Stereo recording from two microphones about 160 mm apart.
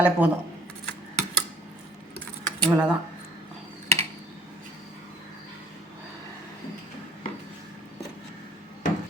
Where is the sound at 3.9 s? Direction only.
40° right (ahead or behind).